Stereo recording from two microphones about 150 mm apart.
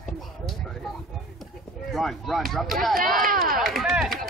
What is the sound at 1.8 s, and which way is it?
Speech, centre (ahead or behind).